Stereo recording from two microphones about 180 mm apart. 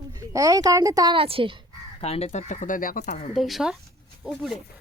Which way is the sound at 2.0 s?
35° left (ahead or behind).